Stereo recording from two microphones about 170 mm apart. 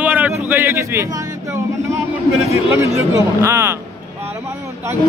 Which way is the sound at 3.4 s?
15° right (ahead or behind).